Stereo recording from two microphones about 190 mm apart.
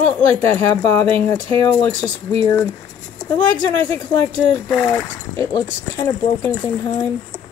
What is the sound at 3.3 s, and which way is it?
A woman's voice, 10° left (ahead or behind).